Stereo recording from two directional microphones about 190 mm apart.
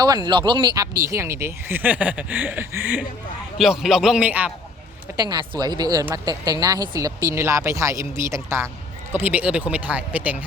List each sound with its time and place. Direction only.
0.0 s a man's voice: 20° right (ahead or behind)
5.1 s speech: 20° right (ahead or behind)